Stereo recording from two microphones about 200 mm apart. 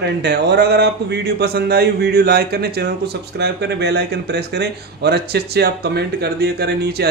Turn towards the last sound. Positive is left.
turn(degrees=-55)  # may be behind; listen again after turning